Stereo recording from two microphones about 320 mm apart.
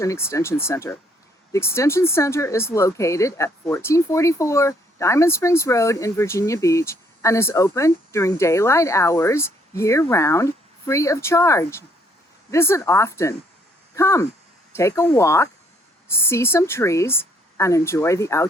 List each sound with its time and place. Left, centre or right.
0.0 s speech: centre